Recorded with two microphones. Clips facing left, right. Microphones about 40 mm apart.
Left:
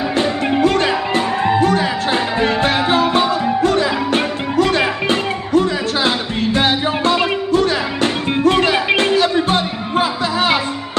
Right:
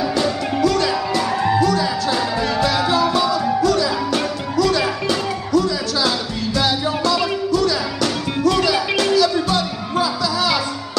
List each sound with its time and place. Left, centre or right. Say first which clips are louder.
0.1 s music: left 3 dB; left